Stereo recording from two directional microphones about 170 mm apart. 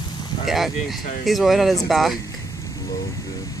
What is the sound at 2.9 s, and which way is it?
Vehicle, 20° left (ahead or behind).